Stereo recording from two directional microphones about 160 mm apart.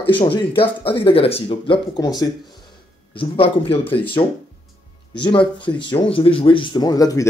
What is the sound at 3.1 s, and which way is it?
Speech, 35° left (ahead or behind).